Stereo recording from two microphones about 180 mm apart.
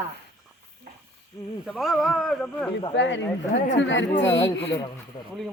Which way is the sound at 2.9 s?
85° left.